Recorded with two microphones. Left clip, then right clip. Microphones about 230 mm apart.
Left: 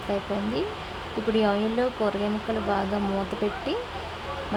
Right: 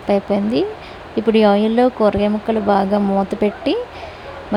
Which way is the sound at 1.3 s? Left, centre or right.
Right.